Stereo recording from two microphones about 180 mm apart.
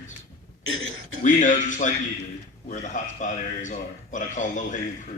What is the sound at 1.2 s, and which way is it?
A man's voice, 45° left (ahead or behind).